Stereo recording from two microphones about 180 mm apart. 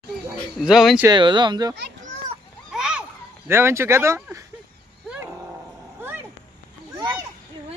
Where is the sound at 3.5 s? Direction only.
15° right (ahead or behind).